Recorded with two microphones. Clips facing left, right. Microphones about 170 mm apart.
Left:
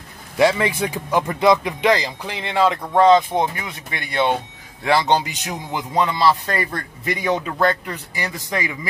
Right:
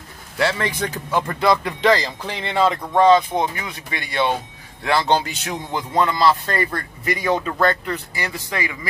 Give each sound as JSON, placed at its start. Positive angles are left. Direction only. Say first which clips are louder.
{"t": 0.4, "sound": "a man's voice", "louder": "left 4 dB", "side_deg": 10}
{"t": 3.1, "sound": "a man's voice", "louder": "left 1 dB", "side_deg": 20}